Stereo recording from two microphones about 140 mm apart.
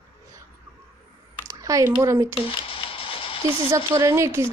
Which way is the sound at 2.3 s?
40° left (ahead or behind).